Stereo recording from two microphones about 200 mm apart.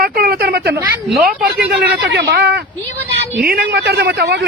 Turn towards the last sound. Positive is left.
turn(degrees=-60)  # may be behind; listen again after turning